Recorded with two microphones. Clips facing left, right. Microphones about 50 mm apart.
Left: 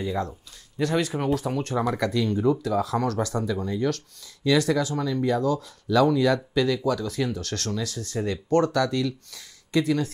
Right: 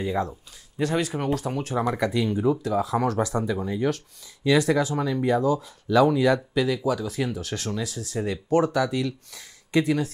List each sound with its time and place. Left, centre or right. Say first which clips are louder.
0.0 s speech: right 2 dB; centre
9.3 s speech: right 1 dB; right